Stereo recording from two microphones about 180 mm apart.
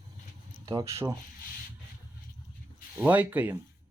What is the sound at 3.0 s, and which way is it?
Speech, 10° right (ahead or behind).